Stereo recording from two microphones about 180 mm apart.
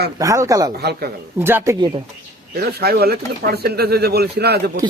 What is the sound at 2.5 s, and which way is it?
Speech, 60° right (ahead or behind).